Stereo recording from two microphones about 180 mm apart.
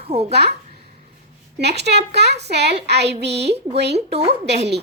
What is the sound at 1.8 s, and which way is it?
A child's voice, 65° right (ahead or behind).